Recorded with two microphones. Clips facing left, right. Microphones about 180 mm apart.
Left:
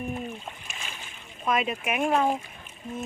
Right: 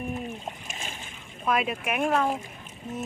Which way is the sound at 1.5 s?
Centre (ahead or behind).